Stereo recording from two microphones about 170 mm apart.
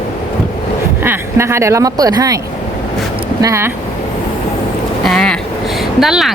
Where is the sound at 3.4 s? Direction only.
15° right (ahead or behind).